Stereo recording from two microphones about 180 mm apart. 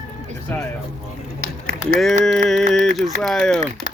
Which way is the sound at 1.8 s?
Centre (ahead or behind).